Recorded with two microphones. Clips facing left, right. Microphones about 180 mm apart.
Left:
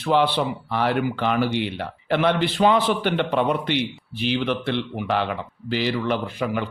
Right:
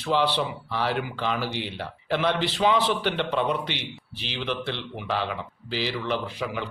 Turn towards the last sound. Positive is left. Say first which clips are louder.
# left 5 dB
turn(degrees=50)  # may be behind; listen again after turning